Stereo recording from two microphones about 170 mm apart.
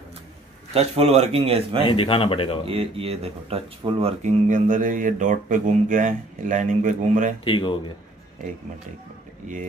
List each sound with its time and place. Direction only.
0.7 s a man's voice: 40° right (ahead or behind)
1.9 s speech: 30° left (ahead or behind)
2.6 s speech: 35° right (ahead or behind)
7.4 s speech: 30° left (ahead or behind)